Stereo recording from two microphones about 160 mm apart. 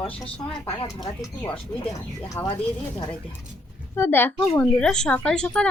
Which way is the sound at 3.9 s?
15° left (ahead or behind).